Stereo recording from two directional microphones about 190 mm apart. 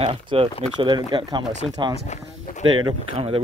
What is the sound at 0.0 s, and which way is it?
Speech, 30° right (ahead or behind).